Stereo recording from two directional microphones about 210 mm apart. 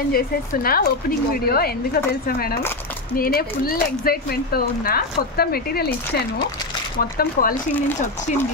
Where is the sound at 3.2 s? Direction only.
45° left (ahead or behind).